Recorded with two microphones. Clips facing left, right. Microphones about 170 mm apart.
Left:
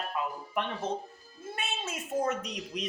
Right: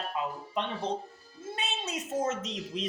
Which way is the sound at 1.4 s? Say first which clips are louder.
Right 1 dB; 20° right (ahead or behind).